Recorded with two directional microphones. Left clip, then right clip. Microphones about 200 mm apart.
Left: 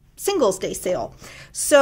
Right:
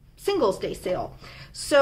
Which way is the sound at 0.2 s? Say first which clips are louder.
Left 3 dB; 50° left (ahead or behind).